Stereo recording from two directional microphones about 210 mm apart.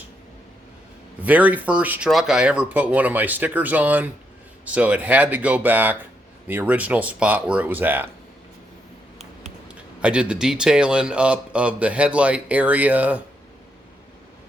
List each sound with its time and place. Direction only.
1.2 s speech: 5° right (ahead or behind)
9.6 s speech: 5° right (ahead or behind)